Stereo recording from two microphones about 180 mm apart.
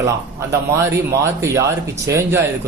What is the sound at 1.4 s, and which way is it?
Speech, 15° right (ahead or behind).